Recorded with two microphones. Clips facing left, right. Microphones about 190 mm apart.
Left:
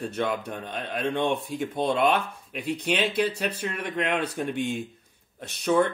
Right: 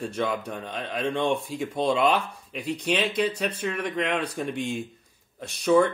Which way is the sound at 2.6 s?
60° left (ahead or behind).